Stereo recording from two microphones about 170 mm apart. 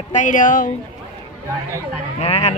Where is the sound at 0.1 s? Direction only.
50° left (ahead or behind).